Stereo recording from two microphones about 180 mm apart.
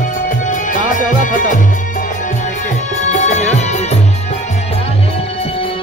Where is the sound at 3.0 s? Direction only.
40° left (ahead or behind).